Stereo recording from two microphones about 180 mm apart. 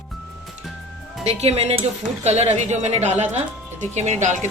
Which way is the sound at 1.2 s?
35° right (ahead or behind).